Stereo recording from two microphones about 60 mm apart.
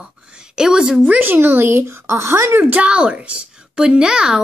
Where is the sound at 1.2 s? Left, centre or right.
Right.